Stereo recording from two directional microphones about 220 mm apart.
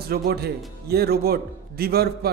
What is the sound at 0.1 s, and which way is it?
A man's voice, 45° right (ahead or behind).